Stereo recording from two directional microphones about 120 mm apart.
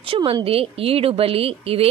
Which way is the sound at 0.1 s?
50° right (ahead or behind).